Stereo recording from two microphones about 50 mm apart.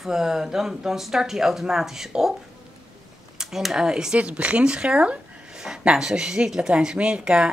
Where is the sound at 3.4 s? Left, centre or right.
Centre.